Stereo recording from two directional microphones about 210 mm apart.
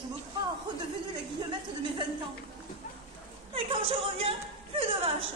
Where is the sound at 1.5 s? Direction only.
25° right (ahead or behind).